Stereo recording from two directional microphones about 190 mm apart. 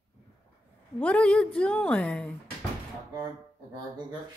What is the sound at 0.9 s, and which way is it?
A woman's voice, 5° left (ahead or behind).